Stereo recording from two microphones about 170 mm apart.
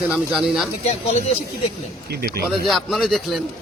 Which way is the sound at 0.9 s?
40° left (ahead or behind).